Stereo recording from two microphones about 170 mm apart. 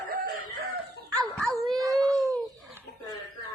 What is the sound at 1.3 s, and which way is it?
Dog, centre (ahead or behind).